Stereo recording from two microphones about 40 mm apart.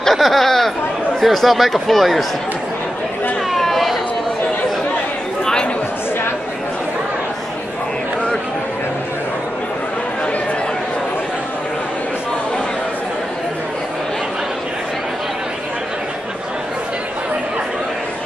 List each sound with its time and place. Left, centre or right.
0.1 s speech: centre
3.5 s a sound: centre
5.4 s chatter: centre